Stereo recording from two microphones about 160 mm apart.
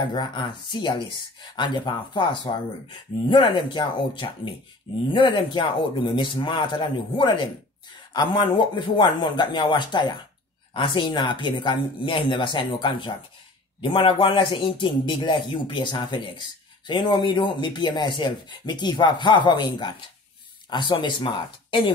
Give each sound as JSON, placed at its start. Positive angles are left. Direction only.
{"t": 0.0, "sound": "a man's voice", "side_deg": 30}